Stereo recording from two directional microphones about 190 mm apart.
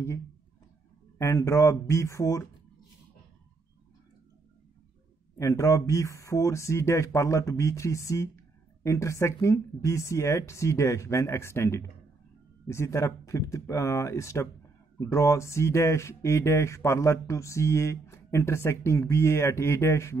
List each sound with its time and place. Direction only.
1.1 s speech: 15° left (ahead or behind)
5.4 s speech: 15° left (ahead or behind)